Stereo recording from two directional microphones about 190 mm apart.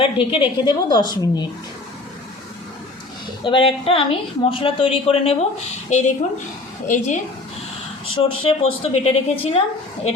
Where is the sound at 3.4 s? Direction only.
25° left (ahead or behind); by 7.2 s 40° left (ahead or behind).